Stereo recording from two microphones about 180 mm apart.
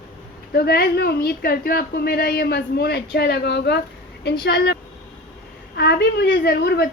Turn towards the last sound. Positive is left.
turn(degrees=65)  # may be behind; listen again after turning